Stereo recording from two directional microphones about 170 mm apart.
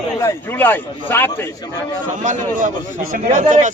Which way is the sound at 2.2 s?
50° right (ahead or behind).